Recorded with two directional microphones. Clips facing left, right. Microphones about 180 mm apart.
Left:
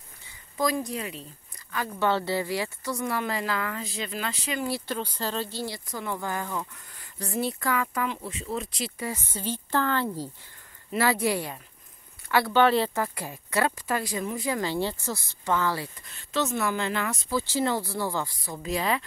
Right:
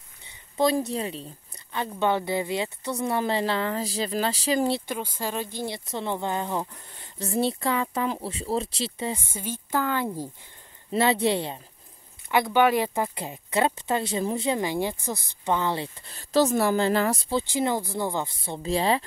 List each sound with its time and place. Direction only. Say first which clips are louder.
0.6 s a woman's voice: right 4 dB; 30° right (ahead or behind)
4.8 s speech: even; 10° right (ahead or behind); by 9.2 s 25° right (ahead or behind)
9.7 s speech: right 1 dB; 10° right (ahead or behind)
16.1 s speech: right 7 dB; 35° right (ahead or behind)